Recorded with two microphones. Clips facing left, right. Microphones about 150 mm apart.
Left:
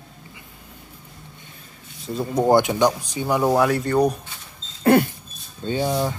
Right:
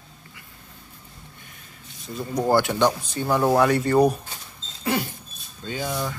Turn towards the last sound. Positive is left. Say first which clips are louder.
# left 6 dB
turn(degrees=30)  # may be behind; listen again after turning